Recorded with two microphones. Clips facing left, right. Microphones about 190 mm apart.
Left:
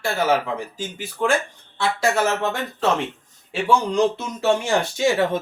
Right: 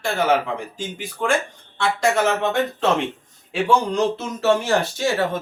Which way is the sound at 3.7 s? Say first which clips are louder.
Left 1 dB; 10° left (ahead or behind).